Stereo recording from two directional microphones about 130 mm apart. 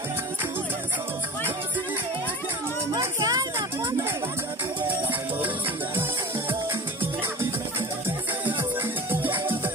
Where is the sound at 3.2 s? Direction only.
30° right (ahead or behind).